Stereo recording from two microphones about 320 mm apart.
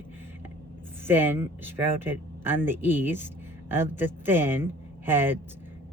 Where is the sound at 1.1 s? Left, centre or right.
Centre.